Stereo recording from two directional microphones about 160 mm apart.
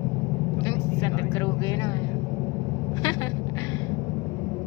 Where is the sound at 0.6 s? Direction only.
20° left (ahead or behind).